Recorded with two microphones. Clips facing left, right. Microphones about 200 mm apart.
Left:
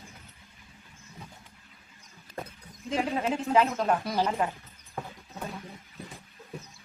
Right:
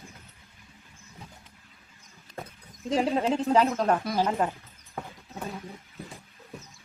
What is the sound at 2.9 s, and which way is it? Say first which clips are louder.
Speech: right 4 dB; 35° right (ahead or behind).